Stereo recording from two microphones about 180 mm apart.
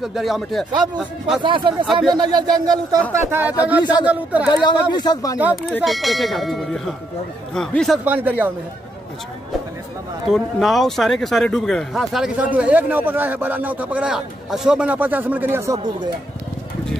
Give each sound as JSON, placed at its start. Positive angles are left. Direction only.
{"t": 0.0, "sound": "speech", "side_deg": 0}
{"t": 1.4, "sound": "speech", "side_deg": -25}
{"t": 4.5, "sound": "speech", "side_deg": 25}
{"t": 5.4, "sound": "speech", "side_deg": -10}
{"t": 10.3, "sound": "speech", "side_deg": 0}